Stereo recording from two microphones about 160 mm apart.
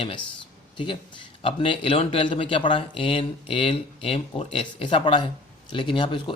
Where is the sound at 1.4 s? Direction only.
35° left (ahead or behind).